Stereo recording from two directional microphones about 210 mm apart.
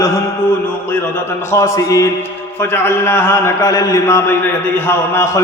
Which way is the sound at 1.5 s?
15° left (ahead or behind).